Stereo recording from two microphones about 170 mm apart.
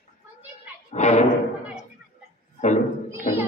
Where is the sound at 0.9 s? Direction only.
40° left (ahead or behind).